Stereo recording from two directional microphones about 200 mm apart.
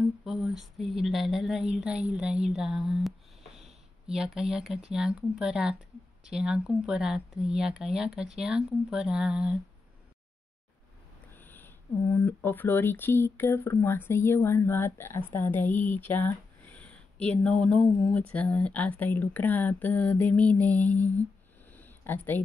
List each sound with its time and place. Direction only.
0.2 s speech: centre (ahead or behind)
4.1 s speech: centre (ahead or behind)
11.3 s speech: 10° left (ahead or behind)
21.7 s a sound: 10° left (ahead or behind)